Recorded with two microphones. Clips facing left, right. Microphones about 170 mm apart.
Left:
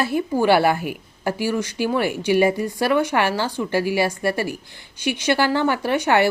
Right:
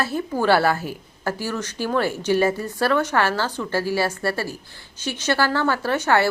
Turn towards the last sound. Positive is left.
turn(degrees=15)  # may be behind; listen again after turning